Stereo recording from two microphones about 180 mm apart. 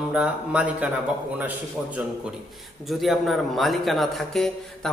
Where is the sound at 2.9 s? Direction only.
Centre (ahead or behind).